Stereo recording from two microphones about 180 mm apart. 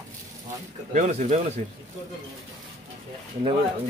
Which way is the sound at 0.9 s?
40° right (ahead or behind).